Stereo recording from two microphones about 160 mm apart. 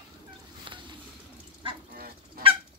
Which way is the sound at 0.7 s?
30° right (ahead or behind).